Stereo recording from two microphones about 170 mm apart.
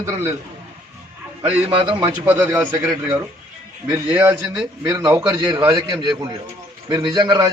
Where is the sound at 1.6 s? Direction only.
30° right (ahead or behind).